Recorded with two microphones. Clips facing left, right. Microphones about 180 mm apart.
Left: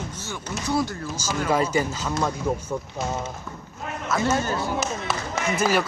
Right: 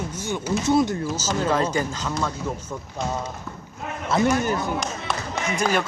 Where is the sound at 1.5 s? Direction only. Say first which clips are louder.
Left 3 dB; 10° left (ahead or behind).